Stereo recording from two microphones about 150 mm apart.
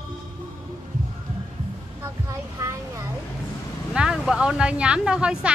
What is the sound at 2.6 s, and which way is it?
Speech, 20° right (ahead or behind).